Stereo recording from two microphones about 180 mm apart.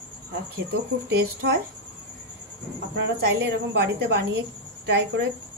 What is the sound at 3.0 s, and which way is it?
A woman's voice, 65° right (ahead or behind).